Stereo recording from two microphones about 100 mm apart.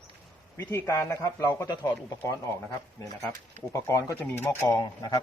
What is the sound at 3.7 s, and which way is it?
Speech, 30° left (ahead or behind).